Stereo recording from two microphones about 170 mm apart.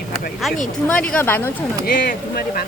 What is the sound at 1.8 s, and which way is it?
Speech, 65° left (ahead or behind).